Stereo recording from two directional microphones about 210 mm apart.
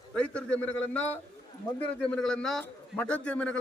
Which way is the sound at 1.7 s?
20° left (ahead or behind).